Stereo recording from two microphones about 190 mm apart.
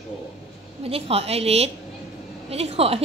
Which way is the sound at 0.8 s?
30° right (ahead or behind).